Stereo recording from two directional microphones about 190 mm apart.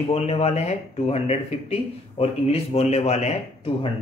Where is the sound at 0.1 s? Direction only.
35° left (ahead or behind).